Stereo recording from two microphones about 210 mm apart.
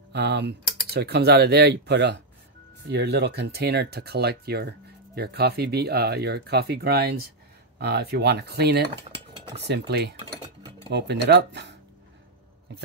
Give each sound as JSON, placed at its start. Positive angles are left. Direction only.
{"t": 0.1, "sound": "speech", "side_deg": -55}